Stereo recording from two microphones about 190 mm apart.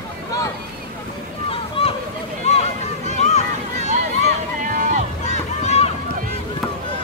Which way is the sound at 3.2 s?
35° left (ahead or behind).